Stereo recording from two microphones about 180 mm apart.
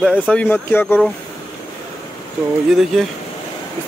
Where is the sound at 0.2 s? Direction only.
10° left (ahead or behind).